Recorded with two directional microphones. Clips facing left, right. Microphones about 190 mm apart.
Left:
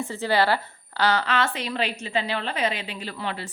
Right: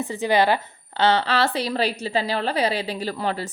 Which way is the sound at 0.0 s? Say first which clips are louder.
Right 3 dB; 15° right (ahead or behind).